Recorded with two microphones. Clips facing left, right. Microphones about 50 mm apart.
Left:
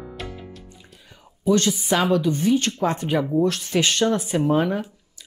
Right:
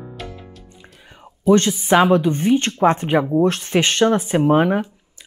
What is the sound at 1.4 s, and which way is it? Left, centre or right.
Speech, right.